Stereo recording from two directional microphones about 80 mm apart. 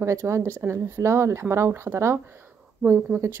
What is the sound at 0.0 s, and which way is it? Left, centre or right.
Speech, right.